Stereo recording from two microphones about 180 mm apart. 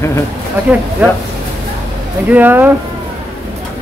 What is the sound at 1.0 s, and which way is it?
Speech, 10° right (ahead or behind).